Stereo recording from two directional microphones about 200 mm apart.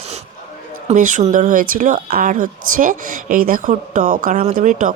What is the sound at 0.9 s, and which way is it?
A woman's voice, 40° right (ahead or behind).